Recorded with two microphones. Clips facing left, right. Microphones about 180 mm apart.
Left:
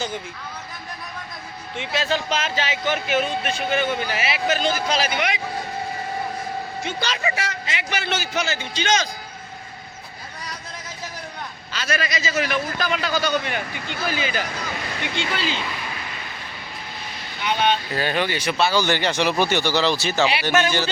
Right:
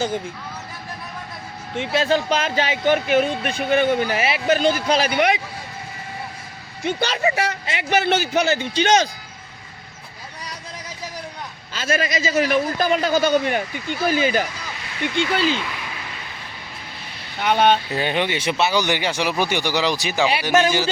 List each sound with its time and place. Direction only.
1.7 s speech: 50° right (ahead or behind)
6.8 s a man's voice: 55° right (ahead or behind)
11.7 s a man's voice: 45° right (ahead or behind)
17.4 s speech: 55° right (ahead or behind)
17.9 s speech: 20° right (ahead or behind)